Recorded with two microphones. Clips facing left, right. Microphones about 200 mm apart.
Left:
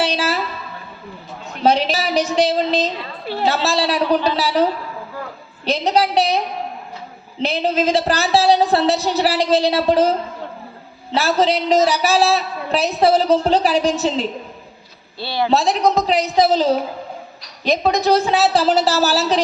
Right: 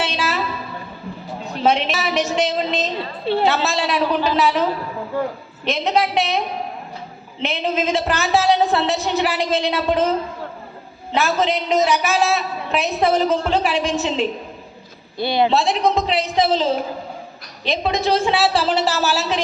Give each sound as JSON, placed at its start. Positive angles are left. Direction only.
{"t": 0.0, "sound": "a sound", "side_deg": 40}
{"t": 1.6, "sound": "a woman's voice", "side_deg": 35}
{"t": 2.9, "sound": "a woman's voice", "side_deg": -25}
{"t": 3.4, "sound": "a woman's voice", "side_deg": 35}
{"t": 5.6, "sound": "a woman's voice", "side_deg": 35}
{"t": 7.4, "sound": "a woman's voice", "side_deg": 35}
{"t": 15.2, "sound": "a woman's voice", "side_deg": -20}
{"t": 15.4, "sound": "a woman's voice", "side_deg": 40}